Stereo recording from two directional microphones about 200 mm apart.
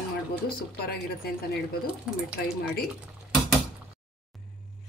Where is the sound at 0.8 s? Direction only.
50° left (ahead or behind).